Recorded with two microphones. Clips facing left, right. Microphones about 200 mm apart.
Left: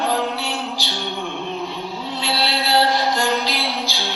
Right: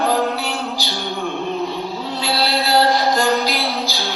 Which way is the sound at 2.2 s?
40° right (ahead or behind).